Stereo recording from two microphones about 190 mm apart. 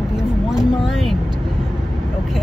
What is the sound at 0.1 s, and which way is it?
Vehicle, 5° right (ahead or behind).